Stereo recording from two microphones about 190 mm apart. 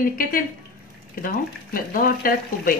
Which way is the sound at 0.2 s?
45° left (ahead or behind).